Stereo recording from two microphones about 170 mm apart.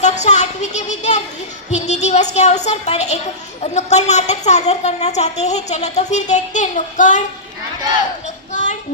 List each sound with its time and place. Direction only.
0.0 s a woman's voice: 45° left (ahead or behind)